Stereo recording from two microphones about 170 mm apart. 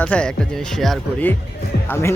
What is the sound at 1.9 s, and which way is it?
Speech, 15° left (ahead or behind).